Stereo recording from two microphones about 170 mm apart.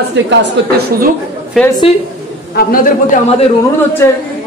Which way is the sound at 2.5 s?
55° left (ahead or behind).